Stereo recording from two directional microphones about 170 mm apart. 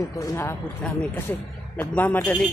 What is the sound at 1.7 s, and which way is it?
Speech, 10° left (ahead or behind).